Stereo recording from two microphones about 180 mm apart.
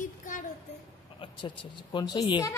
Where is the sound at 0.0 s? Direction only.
45° left (ahead or behind).